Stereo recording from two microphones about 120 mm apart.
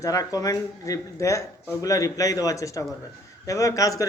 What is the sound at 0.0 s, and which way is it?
Speech, 25° left (ahead or behind).